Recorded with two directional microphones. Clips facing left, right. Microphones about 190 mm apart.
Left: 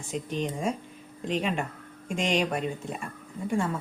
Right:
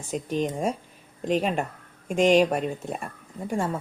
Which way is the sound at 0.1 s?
45° right (ahead or behind).